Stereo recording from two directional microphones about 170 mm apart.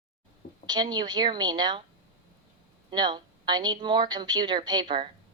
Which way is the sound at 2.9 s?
25° right (ahead or behind).